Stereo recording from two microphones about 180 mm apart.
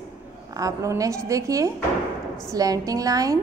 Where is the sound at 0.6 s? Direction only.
20° right (ahead or behind).